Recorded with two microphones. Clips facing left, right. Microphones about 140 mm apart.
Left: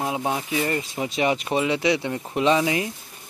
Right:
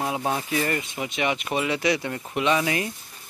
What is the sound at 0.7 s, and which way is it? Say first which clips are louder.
Speech: left 3 dB; 30° left (ahead or behind).